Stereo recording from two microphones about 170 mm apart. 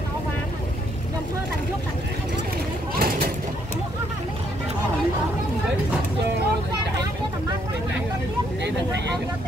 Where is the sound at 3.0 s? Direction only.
60° right (ahead or behind).